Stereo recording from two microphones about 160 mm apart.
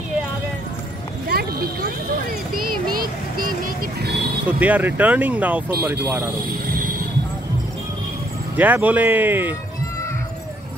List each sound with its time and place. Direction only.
1.3 s a sound: 75° right (ahead or behind)
2.5 s vehicle: 65° right (ahead or behind)
4.5 s speech: 10° right (ahead or behind)
8.5 s speech: 10° right (ahead or behind)